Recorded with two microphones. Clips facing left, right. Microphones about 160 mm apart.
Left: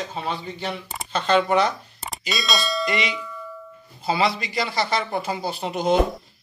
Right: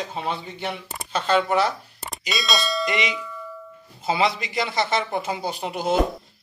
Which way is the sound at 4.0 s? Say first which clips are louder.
Even; 20° right (ahead or behind).